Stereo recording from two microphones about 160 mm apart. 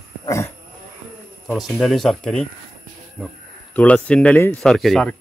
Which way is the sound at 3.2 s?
5° right (ahead or behind).